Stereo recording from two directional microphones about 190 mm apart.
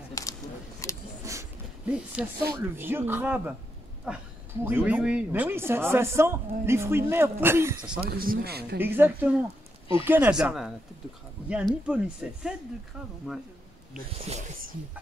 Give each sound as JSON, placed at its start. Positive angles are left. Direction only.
{"t": 0.1, "sound": "a sound", "side_deg": 15}
{"t": 1.2, "sound": "a sound", "side_deg": -15}
{"t": 2.2, "sound": "speech", "side_deg": -5}
{"t": 8.0, "sound": "speech", "side_deg": -50}
{"t": 8.7, "sound": "speech", "side_deg": -10}
{"t": 14.1, "sound": "speech", "side_deg": -35}